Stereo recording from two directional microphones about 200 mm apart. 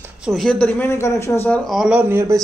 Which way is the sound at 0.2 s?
Centre (ahead or behind).